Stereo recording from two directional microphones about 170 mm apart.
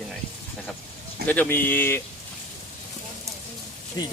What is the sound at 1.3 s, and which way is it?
Speech, 10° left (ahead or behind).